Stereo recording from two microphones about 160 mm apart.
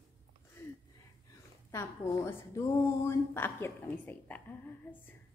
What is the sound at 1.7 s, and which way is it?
A woman's voice, 15° left (ahead or behind).